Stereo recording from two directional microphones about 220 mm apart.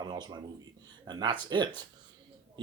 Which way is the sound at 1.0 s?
20° right (ahead or behind).